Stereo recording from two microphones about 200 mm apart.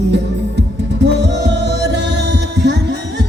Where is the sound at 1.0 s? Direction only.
60° right (ahead or behind).